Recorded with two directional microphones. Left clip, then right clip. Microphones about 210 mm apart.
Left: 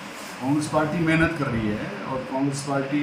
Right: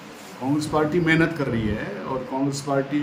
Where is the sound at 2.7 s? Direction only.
20° right (ahead or behind).